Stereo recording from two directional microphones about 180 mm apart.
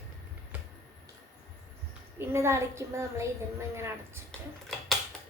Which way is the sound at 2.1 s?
15° right (ahead or behind).